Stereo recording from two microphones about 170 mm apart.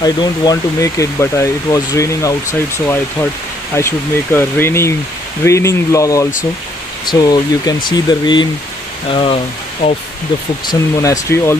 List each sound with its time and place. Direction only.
0.0 s speech: 25° left (ahead or behind)
3.7 s speech: 15° left (ahead or behind); by 9.9 s 35° left (ahead or behind)
10.7 s speech: 20° left (ahead or behind)